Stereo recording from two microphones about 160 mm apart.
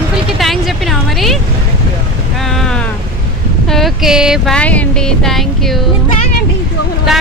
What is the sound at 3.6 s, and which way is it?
Speech, centre (ahead or behind).